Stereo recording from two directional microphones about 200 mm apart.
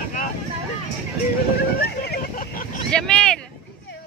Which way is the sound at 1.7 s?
50° left (ahead or behind).